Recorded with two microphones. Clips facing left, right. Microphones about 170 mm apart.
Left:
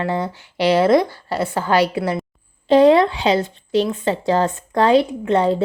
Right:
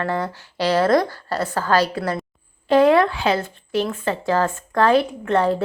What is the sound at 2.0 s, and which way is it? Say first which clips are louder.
Speech: left 3 dB; 5° left (ahead or behind).